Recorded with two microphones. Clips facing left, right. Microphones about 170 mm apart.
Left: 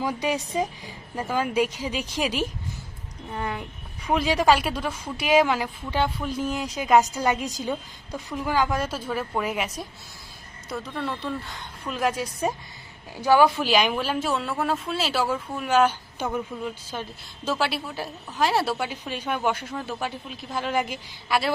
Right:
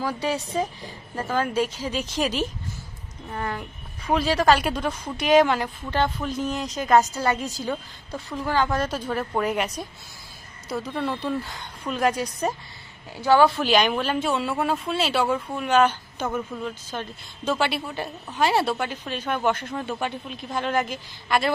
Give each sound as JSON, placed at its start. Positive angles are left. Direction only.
{"t": 0.0, "sound": "speech", "side_deg": 15}
{"t": 10.9, "sound": "speech", "side_deg": -5}